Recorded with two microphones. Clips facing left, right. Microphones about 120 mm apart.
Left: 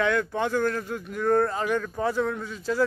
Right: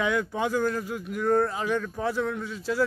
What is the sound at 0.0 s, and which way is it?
Speech, 10° right (ahead or behind).